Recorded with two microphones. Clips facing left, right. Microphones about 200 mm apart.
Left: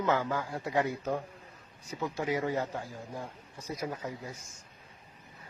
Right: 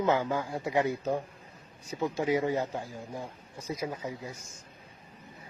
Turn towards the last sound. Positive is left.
turn(degrees=-20)  # may be behind; listen again after turning